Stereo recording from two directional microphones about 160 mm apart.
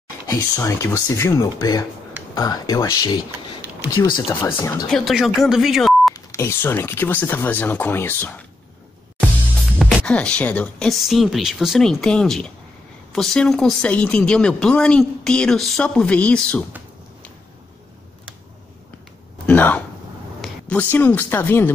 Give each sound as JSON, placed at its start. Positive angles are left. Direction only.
{"t": 0.3, "sound": "speech", "side_deg": 20}
{"t": 4.8, "sound": "speech", "side_deg": 0}
{"t": 6.1, "sound": "speech", "side_deg": 15}
{"t": 9.8, "sound": "speech", "side_deg": 0}
{"t": 19.4, "sound": "speech", "side_deg": 10}